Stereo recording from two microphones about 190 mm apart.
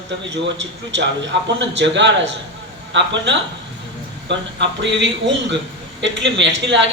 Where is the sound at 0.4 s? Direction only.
75° right (ahead or behind).